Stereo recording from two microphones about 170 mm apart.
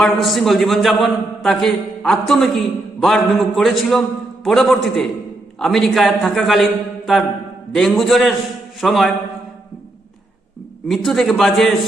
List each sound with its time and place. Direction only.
0.0 s a man's voice: centre (ahead or behind)
10.8 s a man's voice: centre (ahead or behind)